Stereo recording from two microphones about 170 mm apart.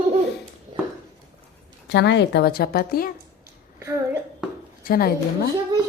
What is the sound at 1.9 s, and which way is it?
Speech, 90° left.